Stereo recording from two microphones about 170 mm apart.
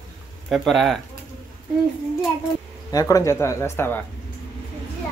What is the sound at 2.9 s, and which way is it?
Speech, 20° left (ahead or behind).